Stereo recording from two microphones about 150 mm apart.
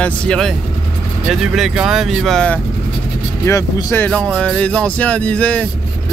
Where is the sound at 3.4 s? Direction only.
15° left (ahead or behind).